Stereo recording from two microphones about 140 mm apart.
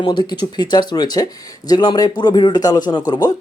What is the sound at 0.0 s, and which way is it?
A man's voice, 30° left (ahead or behind).